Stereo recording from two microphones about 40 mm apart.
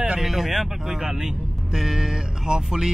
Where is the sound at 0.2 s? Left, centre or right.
Centre.